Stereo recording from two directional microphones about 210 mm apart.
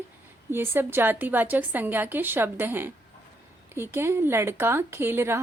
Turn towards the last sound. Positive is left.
turn(degrees=-10)  # may be behind; listen again after turning